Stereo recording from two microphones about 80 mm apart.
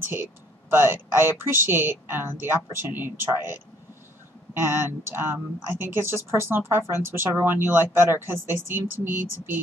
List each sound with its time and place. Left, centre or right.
0.1 s speech: right